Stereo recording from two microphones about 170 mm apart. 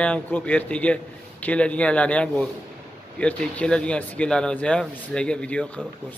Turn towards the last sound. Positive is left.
turn(degrees=5)  # may be behind; listen again after turning